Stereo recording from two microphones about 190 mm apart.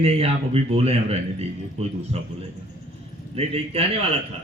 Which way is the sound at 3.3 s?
30° right (ahead or behind).